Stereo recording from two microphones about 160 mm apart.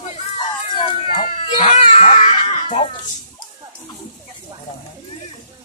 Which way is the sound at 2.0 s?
45° left (ahead or behind).